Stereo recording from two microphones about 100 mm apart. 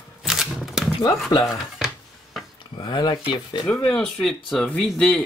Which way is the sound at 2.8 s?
50° left (ahead or behind).